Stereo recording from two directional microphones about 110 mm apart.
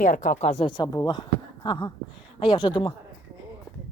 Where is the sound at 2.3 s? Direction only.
50° left (ahead or behind).